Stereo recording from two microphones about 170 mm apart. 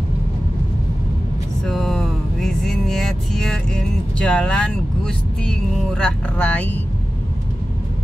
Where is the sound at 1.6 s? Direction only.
Centre (ahead or behind).